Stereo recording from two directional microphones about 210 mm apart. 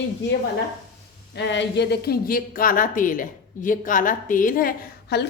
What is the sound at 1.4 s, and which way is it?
Speech, 55° left (ahead or behind).